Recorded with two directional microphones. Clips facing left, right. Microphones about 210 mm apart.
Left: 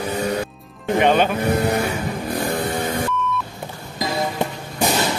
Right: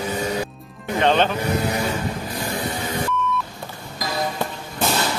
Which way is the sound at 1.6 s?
60° left (ahead or behind).